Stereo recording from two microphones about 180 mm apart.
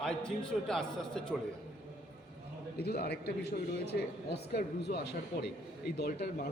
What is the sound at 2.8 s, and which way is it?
Speech, 60° left (ahead or behind).